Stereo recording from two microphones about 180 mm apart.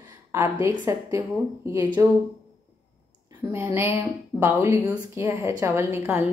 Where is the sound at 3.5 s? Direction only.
15° right (ahead or behind).